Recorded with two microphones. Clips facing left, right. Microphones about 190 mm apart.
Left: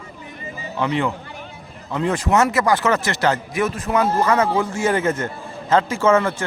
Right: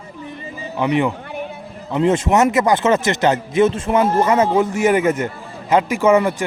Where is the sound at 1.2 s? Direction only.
60° right (ahead or behind).